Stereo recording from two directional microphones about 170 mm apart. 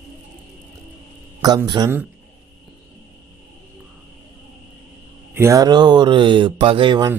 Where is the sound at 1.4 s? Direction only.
25° right (ahead or behind).